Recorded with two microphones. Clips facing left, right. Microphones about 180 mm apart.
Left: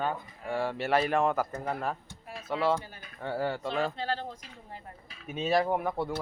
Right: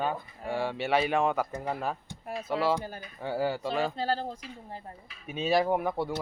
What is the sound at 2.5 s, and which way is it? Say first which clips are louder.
Speech: even; 5° right (ahead or behind).